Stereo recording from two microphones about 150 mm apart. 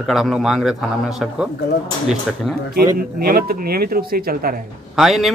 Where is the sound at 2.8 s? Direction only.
80° right.